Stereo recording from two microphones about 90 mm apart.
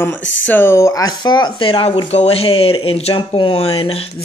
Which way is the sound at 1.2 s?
60° left (ahead or behind).